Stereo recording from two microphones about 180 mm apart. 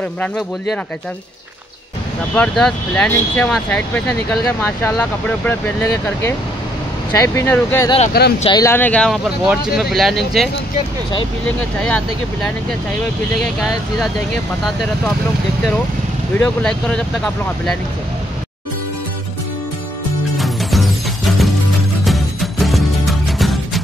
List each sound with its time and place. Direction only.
2.3 s speech: 5° left (ahead or behind)
8.2 s speech: 60° left (ahead or behind)
8.5 s speech: 20° left (ahead or behind); by 14.0 s centre (ahead or behind)
16.3 s speech: 5° left (ahead or behind)
20.3 s music: centre (ahead or behind)